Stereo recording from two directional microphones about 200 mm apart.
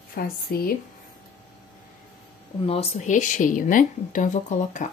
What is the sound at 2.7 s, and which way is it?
Speech, 35° left (ahead or behind).